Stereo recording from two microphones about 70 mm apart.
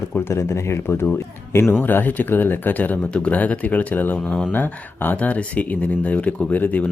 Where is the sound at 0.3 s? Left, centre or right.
Left.